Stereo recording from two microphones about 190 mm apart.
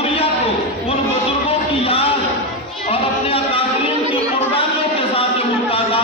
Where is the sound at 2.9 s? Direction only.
30° left (ahead or behind).